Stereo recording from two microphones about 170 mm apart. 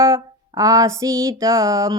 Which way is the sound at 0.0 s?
20° right (ahead or behind).